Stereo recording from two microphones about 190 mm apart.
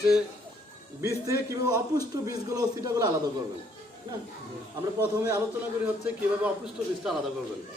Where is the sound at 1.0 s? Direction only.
15° right (ahead or behind).